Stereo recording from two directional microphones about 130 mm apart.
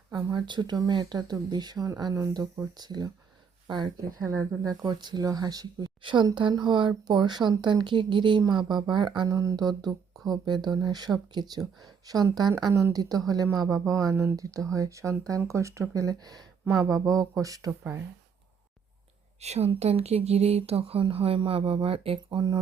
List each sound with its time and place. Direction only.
0.1 s speech: 35° right (ahead or behind)
9.3 s speech: 25° right (ahead or behind)
19.4 s speech: 55° right (ahead or behind); by 22.5 s 35° right (ahead or behind)